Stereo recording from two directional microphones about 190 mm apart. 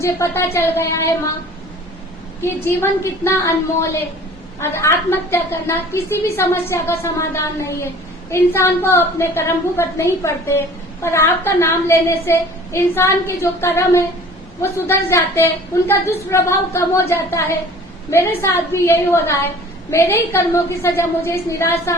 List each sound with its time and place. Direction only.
0.0 s a woman's voice: 15° left (ahead or behind)
2.4 s a woman's voice: 15° left (ahead or behind)
4.6 s a woman's voice: 15° left (ahead or behind)